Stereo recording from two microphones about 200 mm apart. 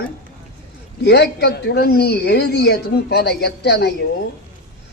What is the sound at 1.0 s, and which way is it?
A woman's voice, 55° left (ahead or behind).